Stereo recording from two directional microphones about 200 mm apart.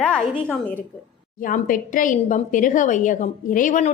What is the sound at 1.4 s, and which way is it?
A woman's voice, 40° left (ahead or behind).